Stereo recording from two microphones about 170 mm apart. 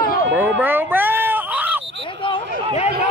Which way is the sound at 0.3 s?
10° right (ahead or behind).